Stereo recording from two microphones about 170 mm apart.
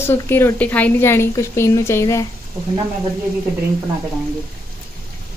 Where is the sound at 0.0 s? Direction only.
15° left (ahead or behind).